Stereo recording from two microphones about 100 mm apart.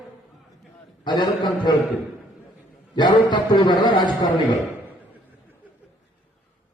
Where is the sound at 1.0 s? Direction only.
45° left (ahead or behind).